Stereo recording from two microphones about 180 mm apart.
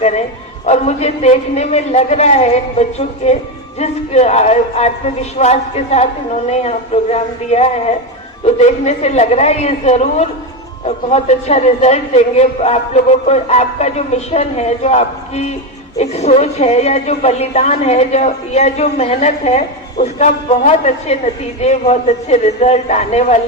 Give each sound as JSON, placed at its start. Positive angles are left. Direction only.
{"t": 0.0, "sound": "a man's voice", "side_deg": 40}